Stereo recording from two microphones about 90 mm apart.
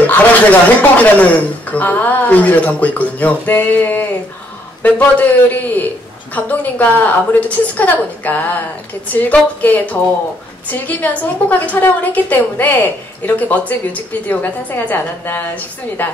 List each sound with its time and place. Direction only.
0.0 s a woman's voice: 15° left (ahead or behind)